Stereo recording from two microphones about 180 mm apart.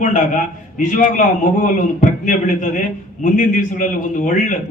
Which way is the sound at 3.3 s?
45° left (ahead or behind).